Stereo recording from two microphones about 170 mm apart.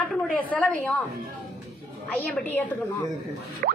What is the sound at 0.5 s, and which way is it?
Speech, 10° left (ahead or behind).